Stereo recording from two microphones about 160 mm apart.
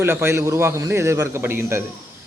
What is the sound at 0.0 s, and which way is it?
A man's voice, 15° right (ahead or behind).